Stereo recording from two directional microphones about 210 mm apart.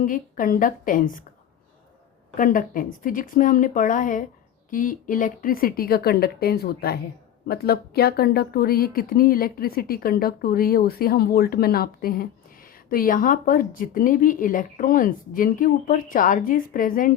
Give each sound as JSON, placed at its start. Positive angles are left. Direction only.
{"t": 0.0, "sound": "speech", "side_deg": 40}
{"t": 2.3, "sound": "speech", "side_deg": 40}